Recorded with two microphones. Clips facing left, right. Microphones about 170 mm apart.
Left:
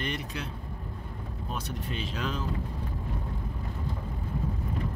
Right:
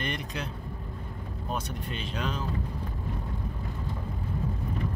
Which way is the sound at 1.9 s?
Centre (ahead or behind).